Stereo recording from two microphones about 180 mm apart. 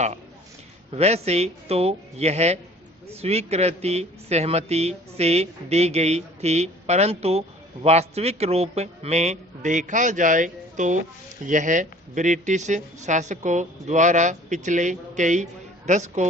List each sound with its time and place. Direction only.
0.9 s speech: 35° right (ahead or behind)